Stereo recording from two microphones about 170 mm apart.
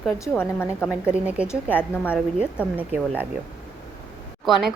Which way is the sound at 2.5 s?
10° right (ahead or behind).